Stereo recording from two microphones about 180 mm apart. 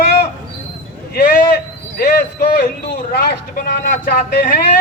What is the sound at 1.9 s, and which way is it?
Speech, 60° left (ahead or behind).